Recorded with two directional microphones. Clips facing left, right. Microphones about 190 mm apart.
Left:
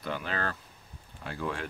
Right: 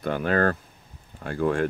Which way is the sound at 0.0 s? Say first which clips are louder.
Right 11 dB; 50° right (ahead or behind).